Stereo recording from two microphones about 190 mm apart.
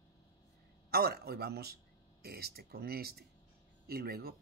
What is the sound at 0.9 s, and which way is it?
Speech, 55° right (ahead or behind).